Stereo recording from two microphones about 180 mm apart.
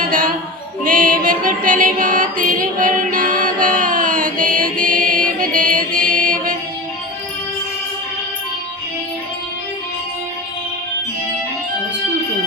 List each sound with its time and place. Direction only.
0.1 s a sound: 50° right (ahead or behind)
0.9 s music: 50° right (ahead or behind)
6.0 s mantra: 50° right (ahead or behind)